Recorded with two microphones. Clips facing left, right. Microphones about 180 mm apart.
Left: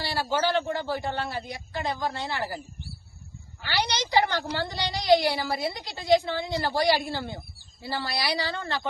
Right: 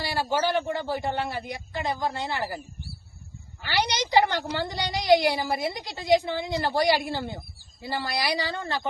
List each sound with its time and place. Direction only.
0.0 s a woman's voice: 15° right (ahead or behind)
3.7 s a woman's voice: 20° right (ahead or behind)